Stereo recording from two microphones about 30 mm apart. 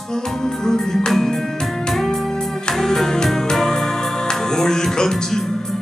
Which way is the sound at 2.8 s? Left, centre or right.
Centre.